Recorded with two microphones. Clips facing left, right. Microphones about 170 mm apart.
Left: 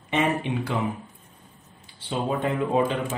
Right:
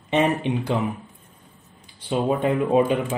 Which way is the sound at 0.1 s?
20° right (ahead or behind).